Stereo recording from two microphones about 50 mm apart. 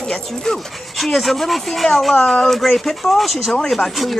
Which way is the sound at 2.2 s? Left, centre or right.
Centre.